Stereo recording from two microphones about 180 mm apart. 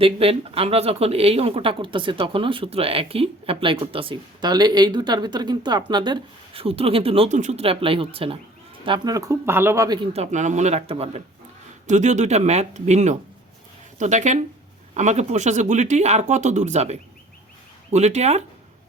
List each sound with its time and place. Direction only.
0.0 s speech: 30° right (ahead or behind)
10.1 s speech: 40° right (ahead or behind)